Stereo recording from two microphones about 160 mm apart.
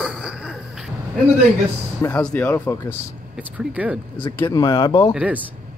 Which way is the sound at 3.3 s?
10° right (ahead or behind).